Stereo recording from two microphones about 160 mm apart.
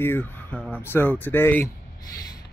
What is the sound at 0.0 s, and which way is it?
Speech, 10° left (ahead or behind).